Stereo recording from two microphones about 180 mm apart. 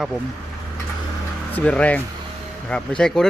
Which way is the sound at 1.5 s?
5° left (ahead or behind).